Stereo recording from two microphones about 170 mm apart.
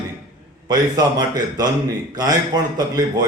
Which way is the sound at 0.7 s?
20° right (ahead or behind).